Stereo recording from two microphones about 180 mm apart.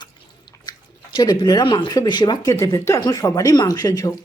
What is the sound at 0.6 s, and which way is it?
Speech, 20° left (ahead or behind).